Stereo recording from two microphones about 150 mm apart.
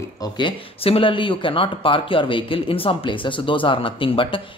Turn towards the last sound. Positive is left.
turn(degrees=35)  # may be behind; listen again after turning